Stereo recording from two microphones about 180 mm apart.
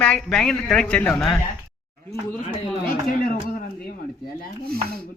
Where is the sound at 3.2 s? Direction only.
50° left (ahead or behind).